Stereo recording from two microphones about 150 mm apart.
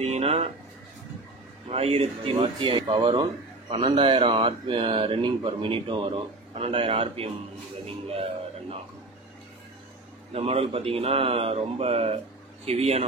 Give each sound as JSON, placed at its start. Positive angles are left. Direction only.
{"t": 0.0, "sound": "speech", "side_deg": -40}
{"t": 1.7, "sound": "speech", "side_deg": -45}
{"t": 10.3, "sound": "speech", "side_deg": -40}